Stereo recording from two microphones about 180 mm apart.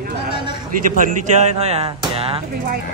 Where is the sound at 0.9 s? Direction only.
40° right (ahead or behind).